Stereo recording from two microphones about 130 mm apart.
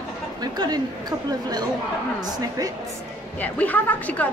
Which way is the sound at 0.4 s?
30° right (ahead or behind).